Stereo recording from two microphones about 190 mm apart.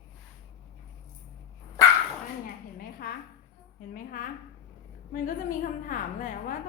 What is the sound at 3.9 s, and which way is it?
A woman's voice, 45° left (ahead or behind).